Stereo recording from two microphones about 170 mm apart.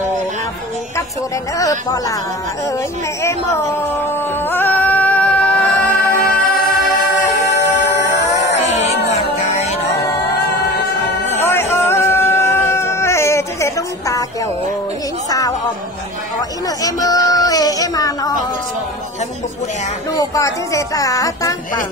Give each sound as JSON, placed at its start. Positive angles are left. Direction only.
{"t": 1.6, "sound": "speech", "side_deg": 20}
{"t": 3.2, "sound": "music", "side_deg": 15}
{"t": 5.9, "sound": "music", "side_deg": 50}
{"t": 9.1, "sound": "music", "side_deg": 40}
{"t": 11.4, "sound": "a sound", "side_deg": 15}
{"t": 15.2, "sound": "music", "side_deg": 20}
{"t": 16.3, "sound": "a woman's voice", "side_deg": 20}
{"t": 20.2, "sound": "speech", "side_deg": 20}